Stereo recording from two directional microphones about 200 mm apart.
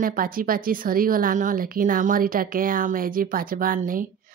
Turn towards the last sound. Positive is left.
turn(degrees=-45)  # may be behind; listen again after turning